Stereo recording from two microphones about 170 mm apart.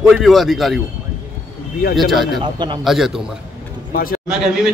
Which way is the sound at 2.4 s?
25° right (ahead or behind).